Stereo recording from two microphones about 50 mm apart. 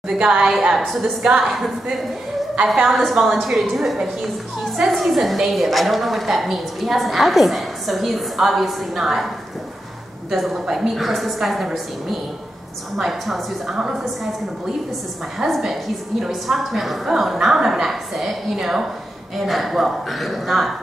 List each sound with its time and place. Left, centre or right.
0.1 s a woman's voice: right
0.5 s a woman's voice: centre
0.8 s a woman's voice: centre
2.6 s a woman's voice: centre
2.9 s a woman's voice: centre
10.3 s a woman's voice: centre
15.3 s a woman's voice: centre